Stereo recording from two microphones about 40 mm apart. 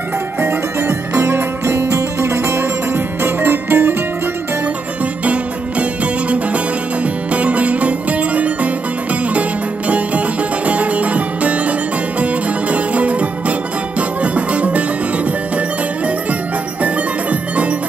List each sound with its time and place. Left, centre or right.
0.4 s music: right
1.9 s music: right
5.2 s music: right
7.3 s music: right
9.8 s music: right
16.8 s music: right